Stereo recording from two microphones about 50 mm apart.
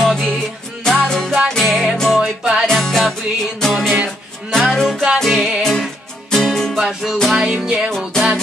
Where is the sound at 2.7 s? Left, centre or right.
Centre.